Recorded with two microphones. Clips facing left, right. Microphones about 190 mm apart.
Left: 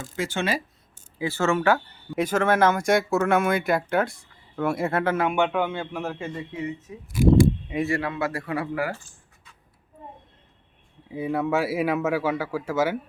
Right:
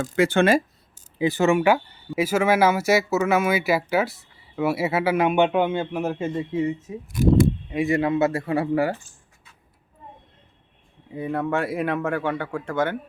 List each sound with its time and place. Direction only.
0.0 s speech: 60° right (ahead or behind)
1.2 s speech: 15° right (ahead or behind)
11.1 s speech: 5° left (ahead or behind)